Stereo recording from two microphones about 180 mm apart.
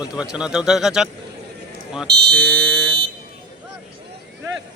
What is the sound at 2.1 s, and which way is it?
Speech, 65° right (ahead or behind).